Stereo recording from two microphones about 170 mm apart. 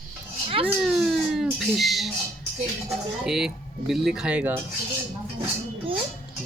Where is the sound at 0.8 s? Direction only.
Centre (ahead or behind).